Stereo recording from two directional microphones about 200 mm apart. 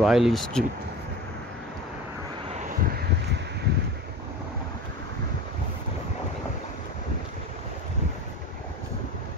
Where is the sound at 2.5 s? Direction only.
35° right (ahead or behind).